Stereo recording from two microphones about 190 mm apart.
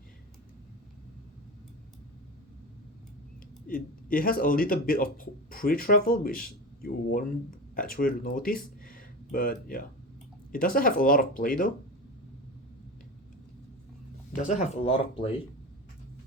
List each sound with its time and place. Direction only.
3.7 s speech: 50° left (ahead or behind)
14.3 s speech: 40° left (ahead or behind)